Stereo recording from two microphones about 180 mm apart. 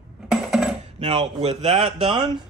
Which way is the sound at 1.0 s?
35° right (ahead or behind).